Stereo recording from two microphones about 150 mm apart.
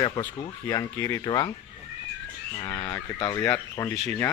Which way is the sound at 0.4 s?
30° left (ahead or behind).